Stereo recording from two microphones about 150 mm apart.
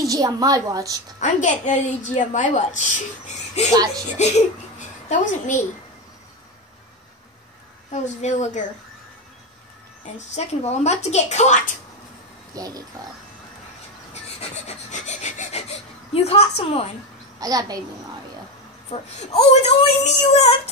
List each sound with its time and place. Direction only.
0.0 s a woman's voice: 25° right (ahead or behind)
1.2 s a woman's voice: 55° left (ahead or behind)
3.7 s a woman's voice: 25° right (ahead or behind)
4.2 s a child's voice: 55° left (ahead or behind)
7.9 s speech: 50° left (ahead or behind)
10.1 s speech: 45° left (ahead or behind)
12.5 s a woman's voice: 25° right (ahead or behind)
14.1 s filing: 45° left (ahead or behind)
17.4 s a woman's voice: 25° right (ahead or behind)
18.9 s speech: 45° left (ahead or behind)